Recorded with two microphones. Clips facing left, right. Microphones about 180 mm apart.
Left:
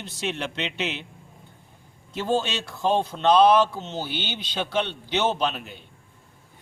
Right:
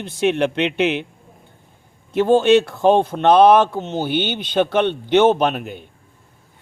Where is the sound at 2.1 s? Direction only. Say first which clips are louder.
Right 12 dB; 55° right (ahead or behind).